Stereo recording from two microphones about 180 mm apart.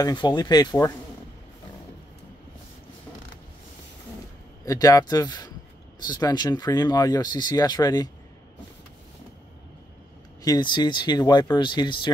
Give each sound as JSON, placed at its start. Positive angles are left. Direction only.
{"t": 0.0, "sound": "speech", "side_deg": 25}
{"t": 4.6, "sound": "speech", "side_deg": 20}
{"t": 10.4, "sound": "speech", "side_deg": 25}